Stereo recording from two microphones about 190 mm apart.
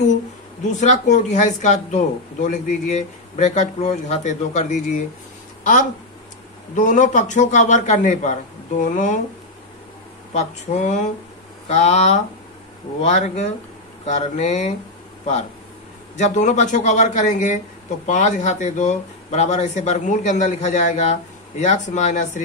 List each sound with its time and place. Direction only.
0.7 s speech: 40° left (ahead or behind)
6.7 s speech: 40° left (ahead or behind)
10.3 s speech: 40° left (ahead or behind)
16.2 s speech: 40° left (ahead or behind)